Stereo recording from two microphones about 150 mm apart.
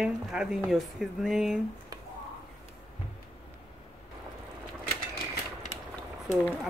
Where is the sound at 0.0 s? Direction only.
5° right (ahead or behind).